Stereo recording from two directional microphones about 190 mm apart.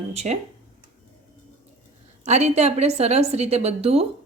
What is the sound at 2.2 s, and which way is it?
A woman's voice, 35° right (ahead or behind).